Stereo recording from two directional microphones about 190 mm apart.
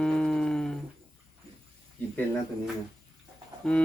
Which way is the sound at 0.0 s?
5° left (ahead or behind).